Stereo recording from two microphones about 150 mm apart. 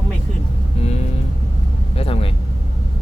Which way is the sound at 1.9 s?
40° left (ahead or behind).